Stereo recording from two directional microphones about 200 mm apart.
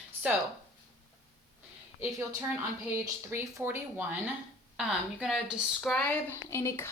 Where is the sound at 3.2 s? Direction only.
10° right (ahead or behind).